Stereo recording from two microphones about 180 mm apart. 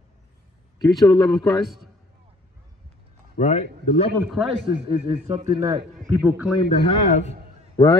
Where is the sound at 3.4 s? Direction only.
40° left (ahead or behind).